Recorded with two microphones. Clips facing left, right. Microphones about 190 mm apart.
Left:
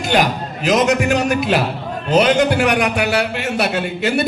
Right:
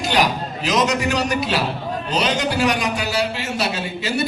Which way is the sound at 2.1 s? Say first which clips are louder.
Left 9 dB; 55° left (ahead or behind).